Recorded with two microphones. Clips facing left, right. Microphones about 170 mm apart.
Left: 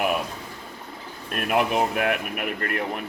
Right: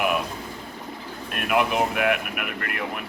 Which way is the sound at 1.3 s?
35° left (ahead or behind).